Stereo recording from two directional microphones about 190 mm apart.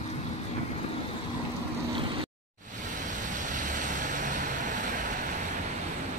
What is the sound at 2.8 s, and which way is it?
Vehicle, 40° right (ahead or behind).